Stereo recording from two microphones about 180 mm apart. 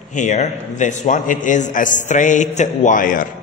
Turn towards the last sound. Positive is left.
turn(degrees=50)  # may be behind; listen again after turning